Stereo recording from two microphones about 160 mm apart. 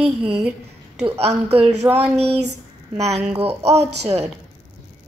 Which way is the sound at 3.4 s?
40° right (ahead or behind).